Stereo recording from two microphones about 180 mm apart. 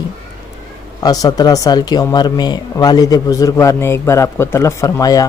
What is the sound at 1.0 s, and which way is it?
A man's voice, 20° left (ahead or behind).